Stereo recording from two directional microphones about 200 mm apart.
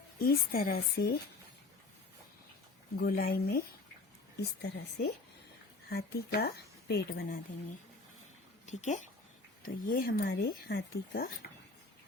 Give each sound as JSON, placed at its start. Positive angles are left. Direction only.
{"t": 0.2, "sound": "speech", "side_deg": 45}
{"t": 3.0, "sound": "a woman's voice", "side_deg": 50}
{"t": 8.6, "sound": "speech", "side_deg": 35}